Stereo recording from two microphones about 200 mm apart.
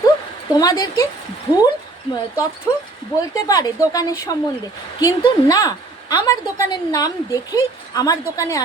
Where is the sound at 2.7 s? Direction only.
20° left (ahead or behind).